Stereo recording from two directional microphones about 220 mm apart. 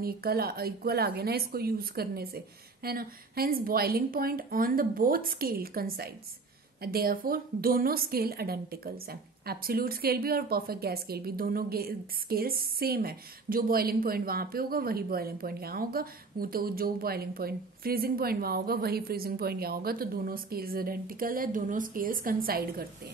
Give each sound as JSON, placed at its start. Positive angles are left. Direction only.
{"t": 0.0, "sound": "a woman's voice", "side_deg": -45}